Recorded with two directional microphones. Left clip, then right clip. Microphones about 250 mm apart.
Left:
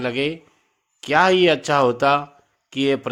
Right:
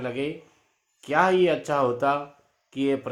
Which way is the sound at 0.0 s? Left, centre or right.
Left.